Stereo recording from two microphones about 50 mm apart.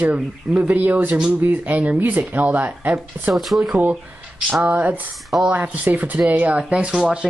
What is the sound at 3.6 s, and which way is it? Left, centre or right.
Speech, right.